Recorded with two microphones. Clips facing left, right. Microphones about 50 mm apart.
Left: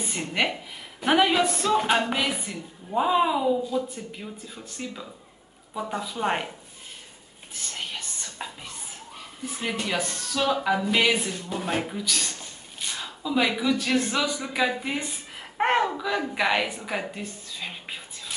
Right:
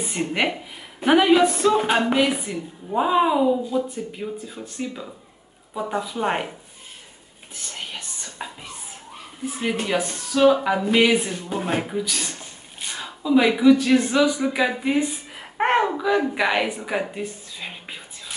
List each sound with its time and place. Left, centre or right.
0.0 s a woman's voice: centre
7.7 s music: centre
9.5 s a woman's voice: centre
17.1 s a sound: centre